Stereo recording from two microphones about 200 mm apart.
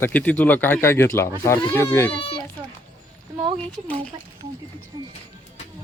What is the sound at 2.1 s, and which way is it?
Speech, 25° left (ahead or behind).